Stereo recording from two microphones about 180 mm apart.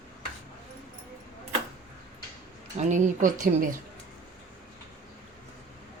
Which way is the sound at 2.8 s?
40° right (ahead or behind).